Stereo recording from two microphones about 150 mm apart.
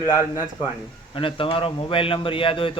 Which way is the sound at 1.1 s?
35° left (ahead or behind).